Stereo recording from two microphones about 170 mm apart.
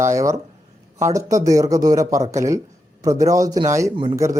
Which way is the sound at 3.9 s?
30° right (ahead or behind).